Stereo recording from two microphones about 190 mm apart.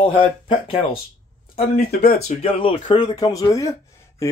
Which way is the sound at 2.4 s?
30° left (ahead or behind).